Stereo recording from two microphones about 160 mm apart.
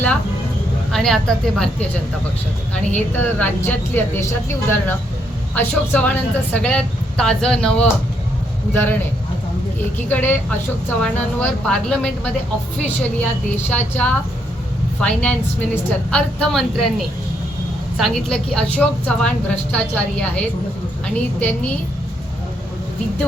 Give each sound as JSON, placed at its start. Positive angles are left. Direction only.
{"t": 0.9, "sound": "a woman's voice", "side_deg": 0}
{"t": 10.1, "sound": "a woman's voice", "side_deg": 10}
{"t": 13.7, "sound": "a woman's voice", "side_deg": 10}